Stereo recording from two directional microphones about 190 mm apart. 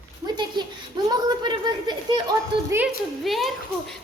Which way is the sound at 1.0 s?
25° right (ahead or behind).